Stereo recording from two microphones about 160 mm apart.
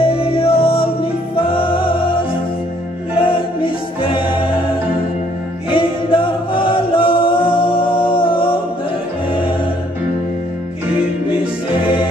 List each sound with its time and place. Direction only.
0.0 s music: 35° left (ahead or behind)
5.7 s chant: 35° left (ahead or behind)